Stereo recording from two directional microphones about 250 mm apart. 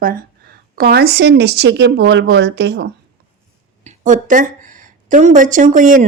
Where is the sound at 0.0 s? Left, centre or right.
Right.